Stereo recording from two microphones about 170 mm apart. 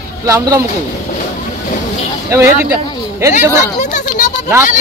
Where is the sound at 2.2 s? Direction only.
15° right (ahead or behind).